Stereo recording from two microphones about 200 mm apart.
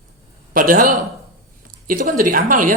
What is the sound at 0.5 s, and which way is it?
A man's voice, 45° right (ahead or behind).